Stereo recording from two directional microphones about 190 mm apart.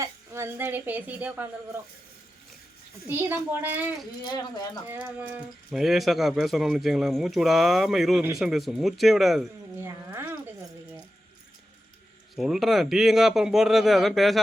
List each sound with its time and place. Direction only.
0.0 s speech: 15° right (ahead or behind)
3.1 s speech: 10° right (ahead or behind)
4.2 s speech: 20° left (ahead or behind)
4.9 s speech: 10° right (ahead or behind)
9.7 s a sound: 15° right (ahead or behind)
12.4 s speech: centre (ahead or behind)